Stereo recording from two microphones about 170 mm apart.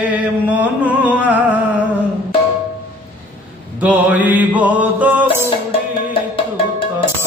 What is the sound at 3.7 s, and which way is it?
Music, 10° right (ahead or behind).